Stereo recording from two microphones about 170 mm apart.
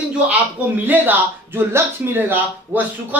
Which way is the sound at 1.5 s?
10° right (ahead or behind).